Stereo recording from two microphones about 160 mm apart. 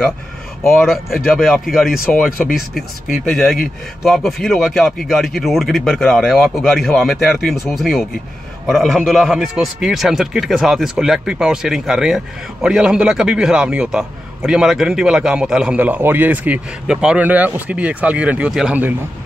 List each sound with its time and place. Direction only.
0.7 s a man's voice: centre (ahead or behind)
2.0 s speech: 65° left (ahead or behind)
2.7 s a man's voice: centre (ahead or behind)